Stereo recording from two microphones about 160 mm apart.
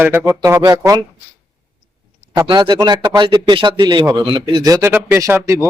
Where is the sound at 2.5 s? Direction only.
25° right (ahead or behind).